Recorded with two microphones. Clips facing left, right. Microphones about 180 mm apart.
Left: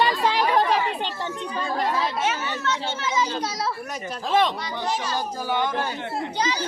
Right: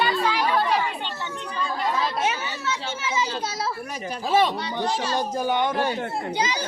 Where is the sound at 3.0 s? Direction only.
10° right (ahead or behind).